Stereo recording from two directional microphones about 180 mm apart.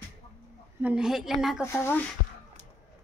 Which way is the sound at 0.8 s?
5° right (ahead or behind).